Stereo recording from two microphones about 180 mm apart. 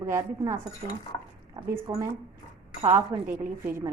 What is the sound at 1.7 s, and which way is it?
Speech, 15° right (ahead or behind).